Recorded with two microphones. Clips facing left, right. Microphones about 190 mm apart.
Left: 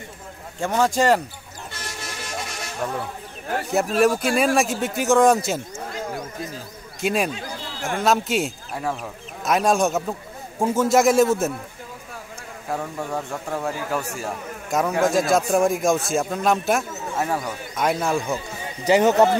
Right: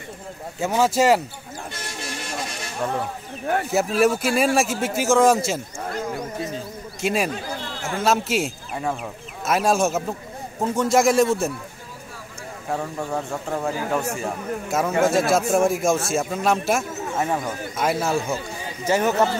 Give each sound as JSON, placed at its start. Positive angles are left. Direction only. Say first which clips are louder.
{"t": 0.6, "sound": "speech", "louder": "right 1 dB", "side_deg": -5}
{"t": 3.7, "sound": "a man's voice", "louder": "left 1 dB", "side_deg": 0}
{"t": 7.0, "sound": "a man's voice", "louder": "even", "side_deg": 0}
{"t": 12.6, "sound": "a man's voice", "louder": "right 1 dB", "side_deg": 0}
{"t": 18.9, "sound": "speech", "louder": "left 4 dB", "side_deg": 20}